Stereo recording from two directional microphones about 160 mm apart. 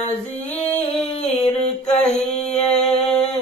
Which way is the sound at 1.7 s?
45° left (ahead or behind).